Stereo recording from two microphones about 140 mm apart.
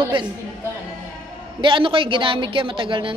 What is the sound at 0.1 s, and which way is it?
Speech, 40° right (ahead or behind).